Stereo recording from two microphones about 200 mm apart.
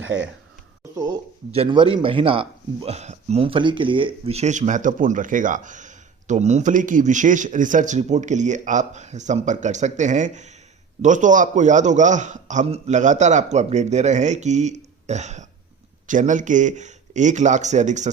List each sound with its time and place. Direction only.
0.0 s speech: 70° right (ahead or behind)
0.9 s a man's voice: 20° right (ahead or behind); by 18.1 s 35° right (ahead or behind)